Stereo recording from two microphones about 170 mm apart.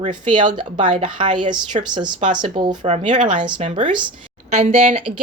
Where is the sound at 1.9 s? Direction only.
25° right (ahead or behind); by 3.2 s 45° right (ahead or behind).